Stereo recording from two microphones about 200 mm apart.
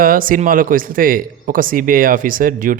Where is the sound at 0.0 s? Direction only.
45° right (ahead or behind).